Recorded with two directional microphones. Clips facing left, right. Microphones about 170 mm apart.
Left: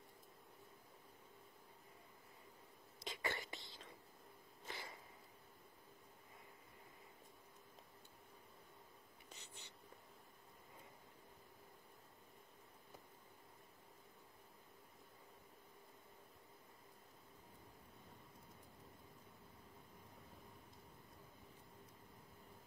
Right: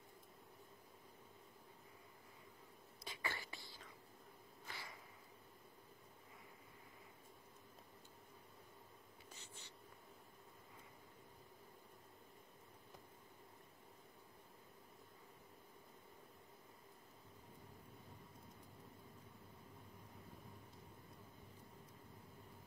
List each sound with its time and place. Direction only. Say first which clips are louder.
3.0 s whispering: left 3 dB; 20° left (ahead or behind)
4.6 s a sound: left 3 dB; 20° left (ahead or behind)
9.3 s whispering: left 1 dB; 15° left (ahead or behind)